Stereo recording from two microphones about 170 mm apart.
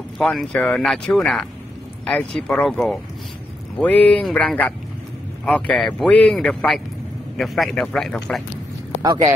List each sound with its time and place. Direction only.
0.2 s a man's voice: 5° left (ahead or behind)
9.0 s speech: 25° right (ahead or behind)